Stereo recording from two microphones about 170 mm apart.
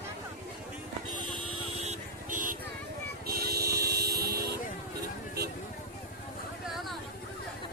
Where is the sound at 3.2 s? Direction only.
65° right (ahead or behind).